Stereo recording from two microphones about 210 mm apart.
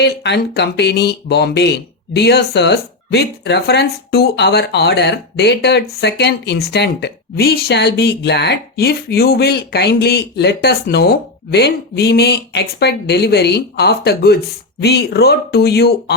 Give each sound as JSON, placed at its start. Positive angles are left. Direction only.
{"t": 0.0, "sound": "a woman's voice", "side_deg": 55}